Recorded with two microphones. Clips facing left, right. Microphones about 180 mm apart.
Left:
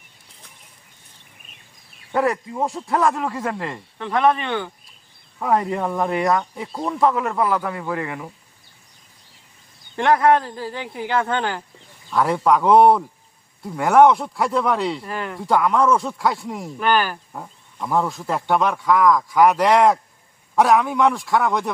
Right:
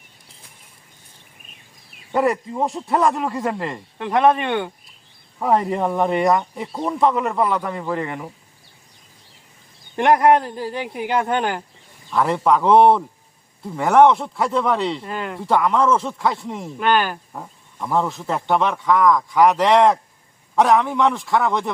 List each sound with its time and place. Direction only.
2.1 s speech: centre (ahead or behind)
3.9 s speech: 20° right (ahead or behind)
5.4 s speech: centre (ahead or behind)
9.9 s a man's voice: 20° right (ahead or behind)
12.1 s speech: centre (ahead or behind)